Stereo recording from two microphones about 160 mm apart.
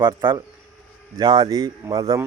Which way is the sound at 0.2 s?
15° right (ahead or behind).